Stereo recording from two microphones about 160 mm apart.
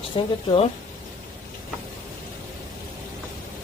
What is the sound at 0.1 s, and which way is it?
Speech, 30° left (ahead or behind).